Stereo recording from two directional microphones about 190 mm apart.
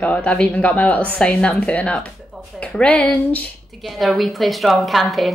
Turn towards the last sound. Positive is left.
turn(degrees=0)  # may be behind; listen again after turning